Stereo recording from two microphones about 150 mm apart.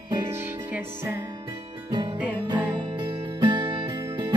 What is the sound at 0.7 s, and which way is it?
Music, 15° right (ahead or behind).